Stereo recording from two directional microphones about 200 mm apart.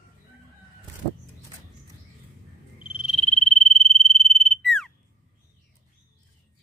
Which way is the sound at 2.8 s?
5° right (ahead or behind).